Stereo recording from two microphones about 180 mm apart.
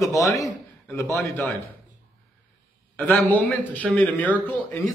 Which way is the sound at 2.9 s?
10° left (ahead or behind).